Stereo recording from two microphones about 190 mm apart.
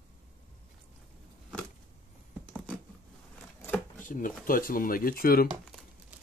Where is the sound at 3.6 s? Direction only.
10° left (ahead or behind).